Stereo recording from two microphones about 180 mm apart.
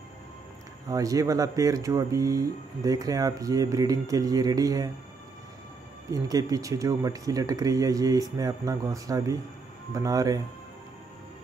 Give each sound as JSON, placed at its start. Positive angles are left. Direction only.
{"t": 0.8, "sound": "speech", "side_deg": -20}
{"t": 6.0, "sound": "speech", "side_deg": -20}